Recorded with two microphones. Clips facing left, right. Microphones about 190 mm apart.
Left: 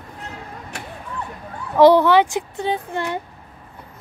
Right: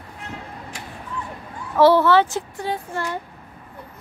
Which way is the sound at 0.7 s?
65° left (ahead or behind).